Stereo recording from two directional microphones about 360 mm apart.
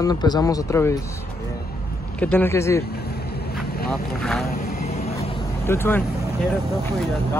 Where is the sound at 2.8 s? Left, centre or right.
Left.